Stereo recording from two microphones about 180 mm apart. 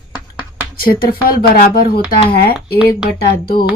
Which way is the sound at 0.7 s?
55° left (ahead or behind).